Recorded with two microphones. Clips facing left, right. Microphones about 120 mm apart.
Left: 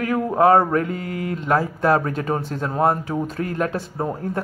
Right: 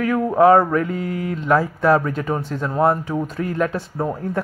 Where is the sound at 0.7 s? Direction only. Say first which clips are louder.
Right 1 dB; 45° left (ahead or behind).